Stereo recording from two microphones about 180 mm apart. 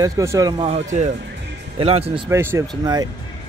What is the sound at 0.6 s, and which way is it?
Speech, 40° right (ahead or behind).